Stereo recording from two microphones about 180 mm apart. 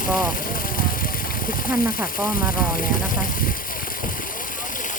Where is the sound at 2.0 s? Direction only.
50° left (ahead or behind).